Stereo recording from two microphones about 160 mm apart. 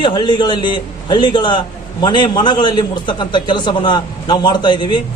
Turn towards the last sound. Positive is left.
turn(degrees=30)  # may be behind; listen again after turning